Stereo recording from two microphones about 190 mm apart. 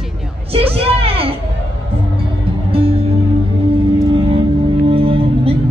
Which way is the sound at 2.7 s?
30° right (ahead or behind).